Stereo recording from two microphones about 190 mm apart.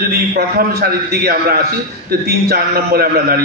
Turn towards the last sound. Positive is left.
turn(degrees=-55)  # may be behind; listen again after turning